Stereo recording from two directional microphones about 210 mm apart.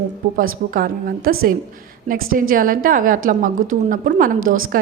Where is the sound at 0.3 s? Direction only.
40° right (ahead or behind).